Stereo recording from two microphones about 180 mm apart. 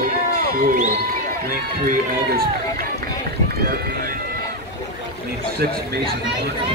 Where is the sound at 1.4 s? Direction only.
50° right (ahead or behind).